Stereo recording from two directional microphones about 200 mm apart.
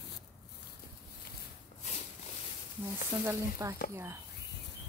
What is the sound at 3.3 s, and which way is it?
Speech, 15° right (ahead or behind).